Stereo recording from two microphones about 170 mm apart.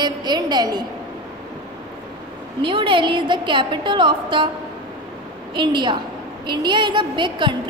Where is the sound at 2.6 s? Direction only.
30° right (ahead or behind).